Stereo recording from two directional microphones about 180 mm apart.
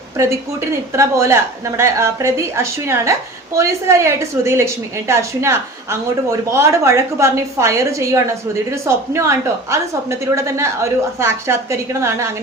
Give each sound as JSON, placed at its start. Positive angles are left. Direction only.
{"t": 0.9, "sound": "a woman's voice", "side_deg": -15}